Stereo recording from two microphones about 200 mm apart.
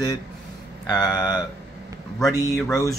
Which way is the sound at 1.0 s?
20° left (ahead or behind).